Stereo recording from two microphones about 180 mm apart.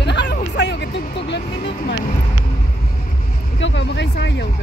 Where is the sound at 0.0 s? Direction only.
70° left (ahead or behind).